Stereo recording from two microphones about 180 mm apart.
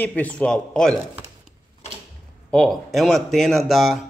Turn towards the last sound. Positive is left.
turn(degrees=0)  # may be behind; listen again after turning